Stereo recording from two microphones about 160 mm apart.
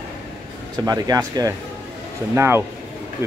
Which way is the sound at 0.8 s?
25° right (ahead or behind).